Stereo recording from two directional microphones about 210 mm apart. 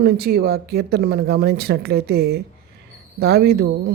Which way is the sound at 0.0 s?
50° right (ahead or behind).